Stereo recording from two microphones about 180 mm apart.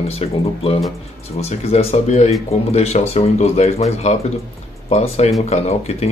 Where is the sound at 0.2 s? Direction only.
30° left (ahead or behind).